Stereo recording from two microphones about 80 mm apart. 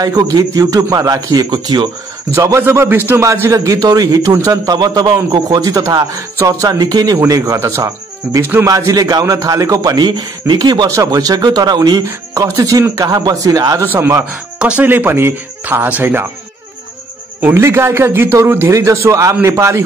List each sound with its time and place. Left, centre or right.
0.0 s speech: right
2.3 s a man's voice: right
7.2 s speech: right
9.9 s speech: right
11.0 s speech: right
13.8 s speech: right
14.6 s speech: centre
14.9 s speech: right
17.6 s a man's voice: right